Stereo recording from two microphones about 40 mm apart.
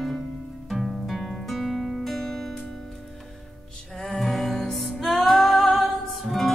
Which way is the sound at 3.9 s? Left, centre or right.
Centre.